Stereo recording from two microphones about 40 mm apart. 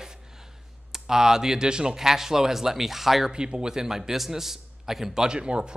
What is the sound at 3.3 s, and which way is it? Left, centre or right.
Speech, right.